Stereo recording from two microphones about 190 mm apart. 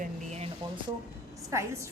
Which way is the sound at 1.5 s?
15° right (ahead or behind).